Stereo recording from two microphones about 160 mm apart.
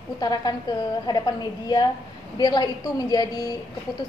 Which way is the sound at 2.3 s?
25° left (ahead or behind).